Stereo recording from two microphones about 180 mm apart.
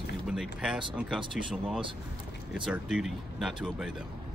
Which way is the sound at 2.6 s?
5° right (ahead or behind).